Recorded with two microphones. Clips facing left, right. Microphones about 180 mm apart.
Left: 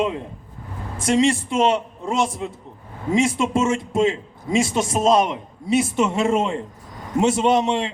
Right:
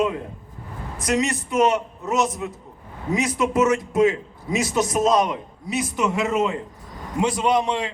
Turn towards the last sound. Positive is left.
turn(degrees=25)  # may be behind; listen again after turning